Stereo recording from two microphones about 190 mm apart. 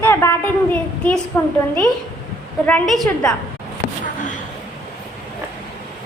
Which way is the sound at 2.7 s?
5° left (ahead or behind).